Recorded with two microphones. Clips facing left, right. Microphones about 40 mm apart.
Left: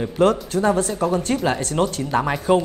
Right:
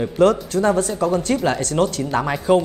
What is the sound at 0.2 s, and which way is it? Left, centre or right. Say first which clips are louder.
Speech: right 2 dB; left.